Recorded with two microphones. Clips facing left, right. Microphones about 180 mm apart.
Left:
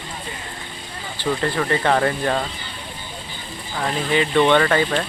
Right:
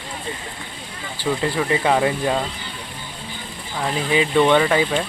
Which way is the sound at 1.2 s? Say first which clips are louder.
Even; 5° right (ahead or behind).